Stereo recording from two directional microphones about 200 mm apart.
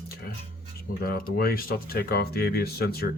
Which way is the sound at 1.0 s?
50° left (ahead or behind).